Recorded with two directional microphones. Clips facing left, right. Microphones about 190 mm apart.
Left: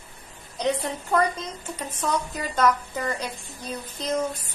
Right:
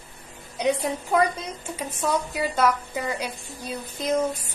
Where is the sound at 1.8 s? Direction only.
10° right (ahead or behind).